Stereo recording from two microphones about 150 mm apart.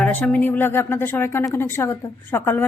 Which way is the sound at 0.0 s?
10° left (ahead or behind).